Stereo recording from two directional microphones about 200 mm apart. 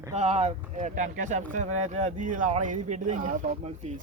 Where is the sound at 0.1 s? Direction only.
35° right (ahead or behind).